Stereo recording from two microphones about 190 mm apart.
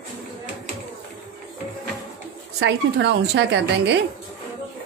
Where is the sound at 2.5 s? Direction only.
65° right (ahead or behind).